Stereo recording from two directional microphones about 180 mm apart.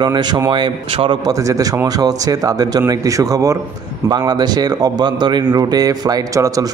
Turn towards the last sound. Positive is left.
turn(degrees=-20)  # may be behind; listen again after turning